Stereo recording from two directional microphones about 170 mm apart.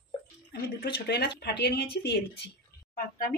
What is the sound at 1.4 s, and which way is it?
Speech, 75° left (ahead or behind).